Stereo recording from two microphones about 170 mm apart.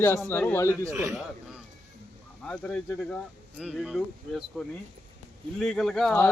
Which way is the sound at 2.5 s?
5° left (ahead or behind).